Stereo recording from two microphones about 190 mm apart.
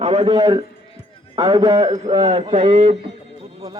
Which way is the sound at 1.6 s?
35° right (ahead or behind).